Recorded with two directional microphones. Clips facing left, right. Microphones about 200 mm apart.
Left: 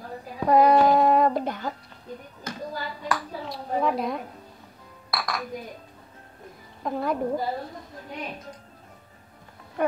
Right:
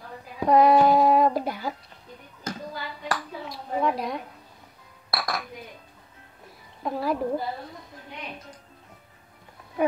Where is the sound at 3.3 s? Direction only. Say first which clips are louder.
Left 2 dB; 40° left (ahead or behind).